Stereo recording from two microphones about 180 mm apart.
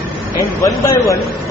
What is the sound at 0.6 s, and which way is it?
Speech, 15° left (ahead or behind).